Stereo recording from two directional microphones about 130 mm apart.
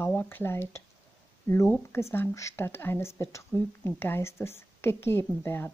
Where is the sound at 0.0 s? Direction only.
15° left (ahead or behind).